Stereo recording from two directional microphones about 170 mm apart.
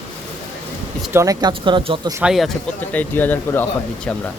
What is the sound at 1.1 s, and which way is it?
Speech, 20° right (ahead or behind).